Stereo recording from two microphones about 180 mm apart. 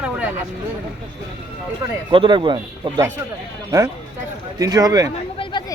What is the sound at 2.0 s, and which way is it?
Speech, 25° right (ahead or behind).